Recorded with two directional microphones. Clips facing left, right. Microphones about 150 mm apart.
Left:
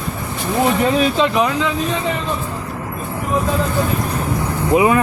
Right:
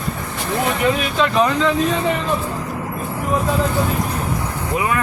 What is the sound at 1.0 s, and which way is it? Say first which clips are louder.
Speech: left 4 dB; 25° left (ahead or behind).